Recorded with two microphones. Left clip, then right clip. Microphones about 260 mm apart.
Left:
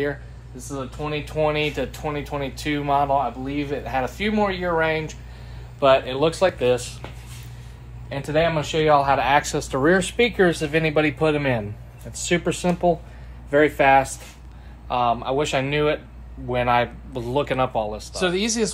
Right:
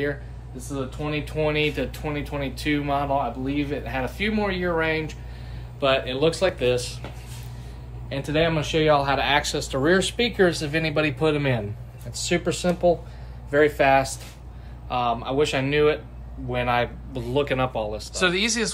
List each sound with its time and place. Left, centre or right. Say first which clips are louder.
0.7 s speech: left 1 dB; centre
5.8 s speech: left 4 dB; centre
8.1 s speech: left 2 dB; centre